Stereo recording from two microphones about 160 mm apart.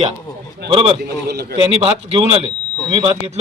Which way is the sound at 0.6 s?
30° right (ahead or behind).